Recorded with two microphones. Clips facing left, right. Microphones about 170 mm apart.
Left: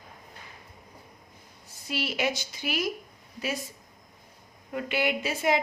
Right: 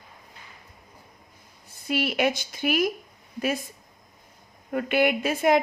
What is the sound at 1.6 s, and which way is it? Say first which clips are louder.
A woman's voice: right 6 dB; 55° right (ahead or behind).